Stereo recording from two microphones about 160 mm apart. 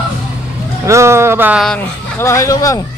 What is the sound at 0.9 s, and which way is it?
Speech, 15° right (ahead or behind).